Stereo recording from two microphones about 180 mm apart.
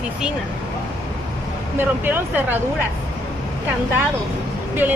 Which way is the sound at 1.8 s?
10° right (ahead or behind).